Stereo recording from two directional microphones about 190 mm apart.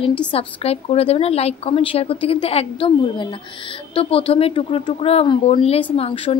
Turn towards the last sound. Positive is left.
turn(degrees=30)  # may be behind; listen again after turning